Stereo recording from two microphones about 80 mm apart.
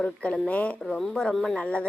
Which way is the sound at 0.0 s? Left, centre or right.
Centre.